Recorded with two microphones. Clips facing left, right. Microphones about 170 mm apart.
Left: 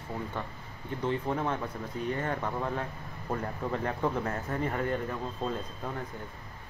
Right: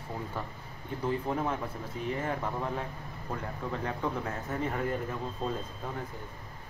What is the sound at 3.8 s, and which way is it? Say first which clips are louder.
Speech: left 2 dB; centre (ahead or behind).